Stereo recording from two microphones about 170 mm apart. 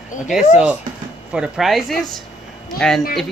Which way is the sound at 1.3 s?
Centre (ahead or behind).